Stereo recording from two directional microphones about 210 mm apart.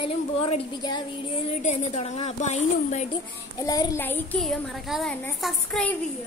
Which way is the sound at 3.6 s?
15° left (ahead or behind).